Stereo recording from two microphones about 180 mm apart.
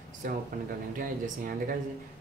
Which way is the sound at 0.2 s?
50° right (ahead or behind).